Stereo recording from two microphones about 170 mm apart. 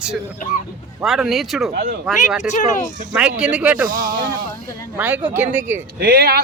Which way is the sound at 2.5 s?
45° left (ahead or behind).